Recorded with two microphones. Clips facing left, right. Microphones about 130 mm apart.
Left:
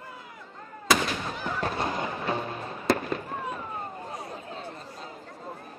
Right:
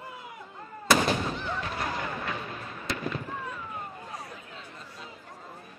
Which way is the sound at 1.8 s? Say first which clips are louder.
Left 3 dB; 30° left (ahead or behind).